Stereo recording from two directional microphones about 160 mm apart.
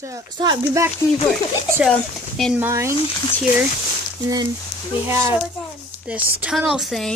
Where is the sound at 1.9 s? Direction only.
5° left (ahead or behind).